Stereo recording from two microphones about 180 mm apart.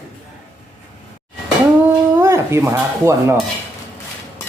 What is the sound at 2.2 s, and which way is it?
Dishes, 15° right (ahead or behind).